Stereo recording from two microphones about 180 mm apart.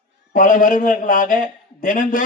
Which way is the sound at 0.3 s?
45° left (ahead or behind).